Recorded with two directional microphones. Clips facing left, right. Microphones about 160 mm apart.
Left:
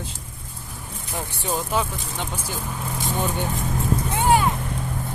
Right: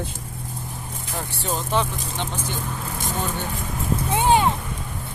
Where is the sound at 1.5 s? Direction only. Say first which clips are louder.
Right 1 dB; 5° left (ahead or behind).